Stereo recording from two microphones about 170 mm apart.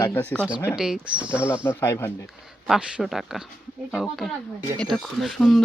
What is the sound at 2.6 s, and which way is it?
Speech, centre (ahead or behind).